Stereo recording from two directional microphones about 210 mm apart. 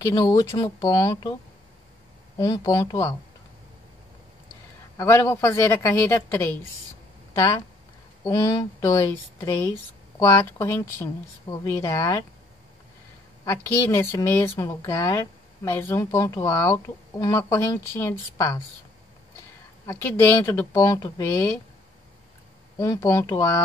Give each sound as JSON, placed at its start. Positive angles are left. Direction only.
{"t": 0.0, "sound": "speech", "side_deg": 15}
{"t": 2.3, "sound": "speech", "side_deg": 20}
{"t": 4.9, "sound": "speech", "side_deg": 15}
{"t": 13.5, "sound": "speech", "side_deg": 15}
{"t": 19.9, "sound": "speech", "side_deg": 10}
{"t": 22.8, "sound": "speech", "side_deg": 15}